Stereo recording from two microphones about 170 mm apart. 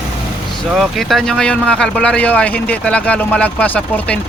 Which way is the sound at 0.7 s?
Centre (ahead or behind).